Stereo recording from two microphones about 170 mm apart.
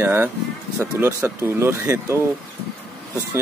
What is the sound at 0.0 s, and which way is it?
Speech, 15° right (ahead or behind).